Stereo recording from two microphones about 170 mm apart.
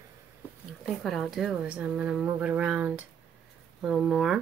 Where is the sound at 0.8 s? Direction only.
Centre (ahead or behind).